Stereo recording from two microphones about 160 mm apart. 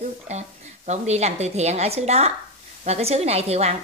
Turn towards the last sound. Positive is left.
turn(degrees=-40)  # may be behind; listen again after turning